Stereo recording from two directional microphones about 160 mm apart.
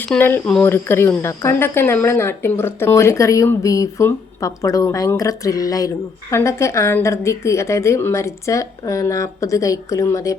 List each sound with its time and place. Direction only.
0.1 s speech: 15° left (ahead or behind)